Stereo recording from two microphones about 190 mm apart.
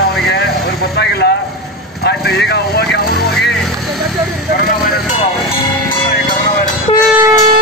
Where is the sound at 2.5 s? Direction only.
60° left (ahead or behind).